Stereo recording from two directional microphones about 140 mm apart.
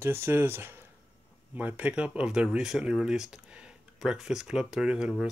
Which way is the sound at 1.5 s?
10° right (ahead or behind).